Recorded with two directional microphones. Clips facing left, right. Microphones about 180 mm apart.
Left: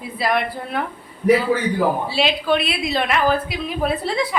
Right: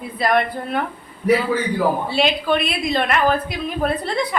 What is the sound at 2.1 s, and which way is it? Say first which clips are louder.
A woman's voice: right 1 dB; centre (ahead or behind).